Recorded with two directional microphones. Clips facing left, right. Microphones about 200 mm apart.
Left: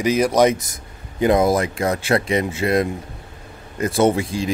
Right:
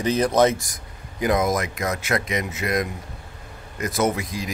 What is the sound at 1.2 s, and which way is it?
Speech, 30° left (ahead or behind).